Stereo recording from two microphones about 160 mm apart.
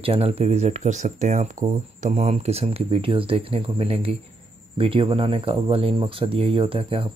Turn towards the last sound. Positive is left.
turn(degrees=-35)  # may be behind; listen again after turning